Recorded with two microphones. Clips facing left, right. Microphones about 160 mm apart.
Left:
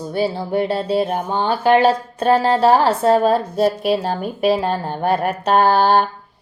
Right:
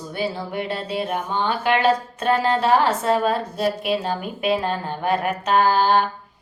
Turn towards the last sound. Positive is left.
turn(degrees=35)  # may be behind; listen again after turning